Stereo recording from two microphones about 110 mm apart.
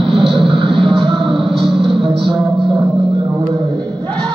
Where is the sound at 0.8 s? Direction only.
Centre (ahead or behind).